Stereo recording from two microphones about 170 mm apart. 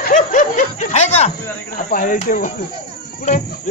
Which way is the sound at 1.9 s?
55° left (ahead or behind).